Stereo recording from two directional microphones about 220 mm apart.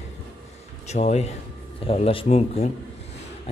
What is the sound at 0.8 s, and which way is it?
Speech, 30° left (ahead or behind).